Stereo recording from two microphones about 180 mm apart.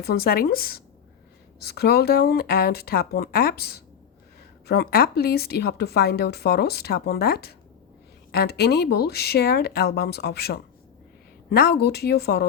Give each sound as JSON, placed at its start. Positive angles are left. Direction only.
{"t": 0.0, "sound": "a woman's voice", "side_deg": 55}